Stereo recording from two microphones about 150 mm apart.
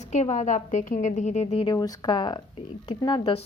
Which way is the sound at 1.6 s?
25° left (ahead or behind).